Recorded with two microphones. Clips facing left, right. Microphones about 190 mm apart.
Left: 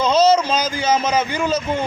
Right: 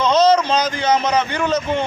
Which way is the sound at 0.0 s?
10° left (ahead or behind).